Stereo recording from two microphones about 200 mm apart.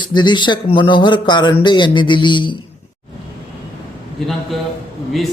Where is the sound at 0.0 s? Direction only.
20° left (ahead or behind).